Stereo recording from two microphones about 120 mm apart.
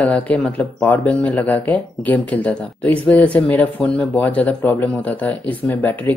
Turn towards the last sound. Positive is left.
turn(degrees=15)  # may be behind; listen again after turning